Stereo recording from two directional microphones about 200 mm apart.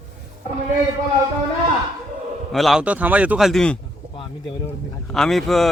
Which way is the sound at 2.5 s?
Centre (ahead or behind).